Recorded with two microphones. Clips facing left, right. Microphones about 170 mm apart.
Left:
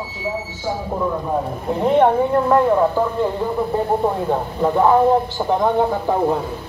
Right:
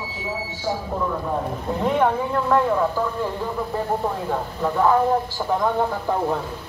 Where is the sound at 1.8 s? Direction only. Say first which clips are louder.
Left 6 dB; 35° left (ahead or behind).